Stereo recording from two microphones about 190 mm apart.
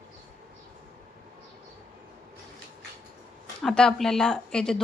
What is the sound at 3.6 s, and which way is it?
A woman's voice, centre (ahead or behind).